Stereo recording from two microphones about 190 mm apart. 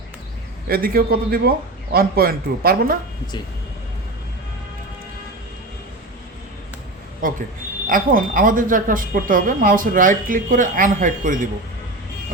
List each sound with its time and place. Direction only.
0.7 s speech: 50° right (ahead or behind)
7.2 s speech: 45° right (ahead or behind)